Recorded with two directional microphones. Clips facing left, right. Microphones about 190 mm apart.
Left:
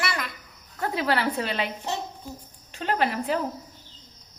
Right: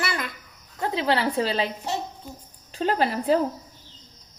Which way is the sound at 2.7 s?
35° right (ahead or behind).